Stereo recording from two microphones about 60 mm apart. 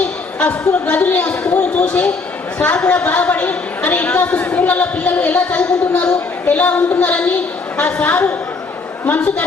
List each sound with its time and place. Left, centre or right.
0.0 s a woman's voice: left